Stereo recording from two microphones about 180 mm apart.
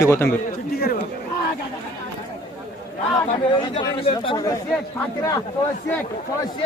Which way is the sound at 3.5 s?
30° left (ahead or behind).